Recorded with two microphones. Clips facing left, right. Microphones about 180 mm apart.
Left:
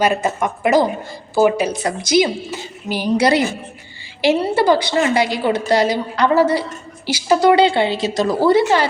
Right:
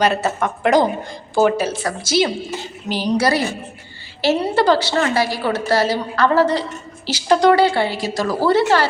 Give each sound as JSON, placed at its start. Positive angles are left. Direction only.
{"t": 0.0, "sound": "a woman's voice", "side_deg": 10}
{"t": 4.4, "sound": "a woman's voice", "side_deg": 5}
{"t": 7.5, "sound": "a woman's voice", "side_deg": 20}